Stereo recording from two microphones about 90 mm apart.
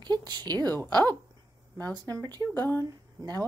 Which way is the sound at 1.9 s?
45° right (ahead or behind).